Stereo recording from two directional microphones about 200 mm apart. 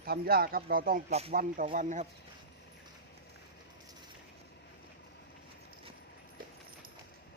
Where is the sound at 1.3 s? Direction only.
45° right (ahead or behind).